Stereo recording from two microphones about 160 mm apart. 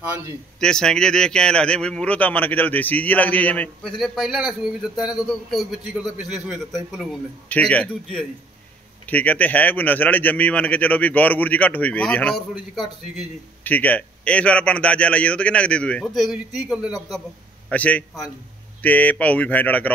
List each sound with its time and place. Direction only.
0.6 s a man's voice: 5° left (ahead or behind)
7.4 s a man's voice: 10° left (ahead or behind)
13.7 s a man's voice: 10° left (ahead or behind)
17.6 s a man's voice: 10° left (ahead or behind)